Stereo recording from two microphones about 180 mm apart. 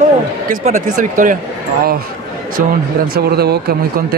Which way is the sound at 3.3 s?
60° right (ahead or behind).